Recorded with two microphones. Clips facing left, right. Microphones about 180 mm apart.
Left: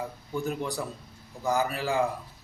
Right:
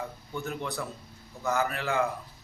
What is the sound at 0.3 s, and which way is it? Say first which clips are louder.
Speech: left 3 dB; 35° left (ahead or behind).